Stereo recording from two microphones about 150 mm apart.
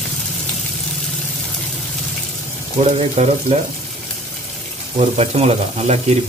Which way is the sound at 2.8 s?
45° right (ahead or behind).